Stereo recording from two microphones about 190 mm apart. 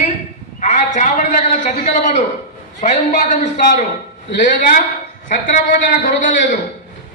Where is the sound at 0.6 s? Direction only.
40° left (ahead or behind).